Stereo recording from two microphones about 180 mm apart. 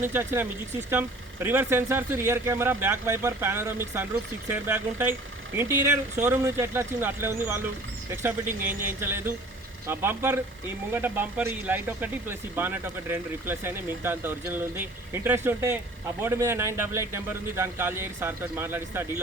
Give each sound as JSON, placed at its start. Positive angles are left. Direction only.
{"t": 0.0, "sound": "speech", "side_deg": -10}